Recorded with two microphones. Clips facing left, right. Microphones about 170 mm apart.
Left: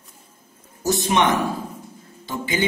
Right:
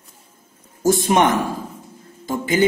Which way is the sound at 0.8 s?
45° right (ahead or behind).